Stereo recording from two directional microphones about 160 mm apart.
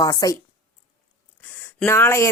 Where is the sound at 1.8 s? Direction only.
15° left (ahead or behind).